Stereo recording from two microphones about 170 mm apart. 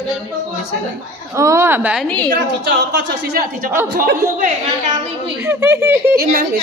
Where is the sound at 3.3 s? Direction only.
60° right (ahead or behind); by 5.3 s 40° right (ahead or behind).